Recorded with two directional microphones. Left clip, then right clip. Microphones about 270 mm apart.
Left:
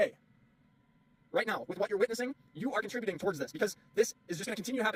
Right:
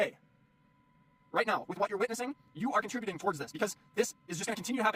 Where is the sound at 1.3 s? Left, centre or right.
Centre.